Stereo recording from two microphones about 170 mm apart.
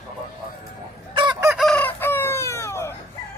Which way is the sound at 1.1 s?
25° right (ahead or behind).